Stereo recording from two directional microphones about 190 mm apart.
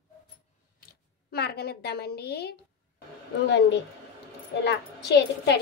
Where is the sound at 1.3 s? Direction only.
60° left (ahead or behind).